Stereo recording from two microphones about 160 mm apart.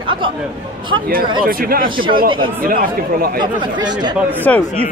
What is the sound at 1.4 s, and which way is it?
Speech, 65° right (ahead or behind).